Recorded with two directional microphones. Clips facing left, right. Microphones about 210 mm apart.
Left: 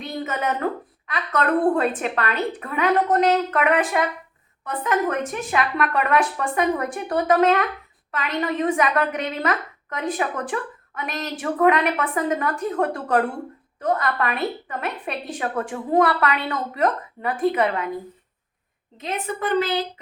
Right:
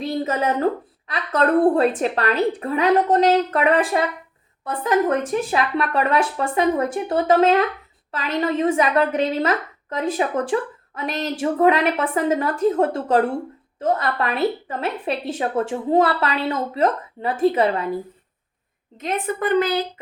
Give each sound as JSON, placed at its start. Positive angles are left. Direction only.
{"t": 0.0, "sound": "a woman's voice", "side_deg": -35}
{"t": 19.0, "sound": "a woman's voice", "side_deg": -50}